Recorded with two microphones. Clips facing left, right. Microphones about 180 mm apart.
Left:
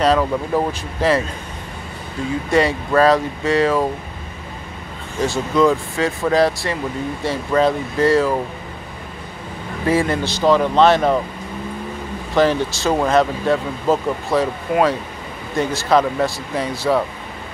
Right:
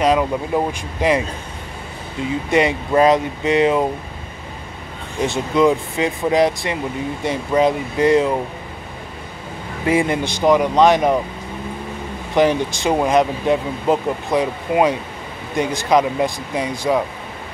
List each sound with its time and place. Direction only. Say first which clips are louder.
0.0 s speech: even; 15° right (ahead or behind)
2.5 s speech: even; 20° right (ahead or behind)
5.2 s speech: even; 20° right (ahead or behind)
9.8 s speech: even; 15° right (ahead or behind)
12.4 s speech: even; 15° right (ahead or behind)